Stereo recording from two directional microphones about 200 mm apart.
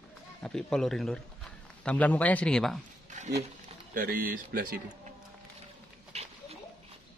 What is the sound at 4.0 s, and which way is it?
Speech, 45° right (ahead or behind).